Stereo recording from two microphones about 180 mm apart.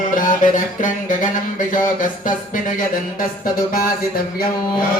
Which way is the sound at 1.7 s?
50° left (ahead or behind).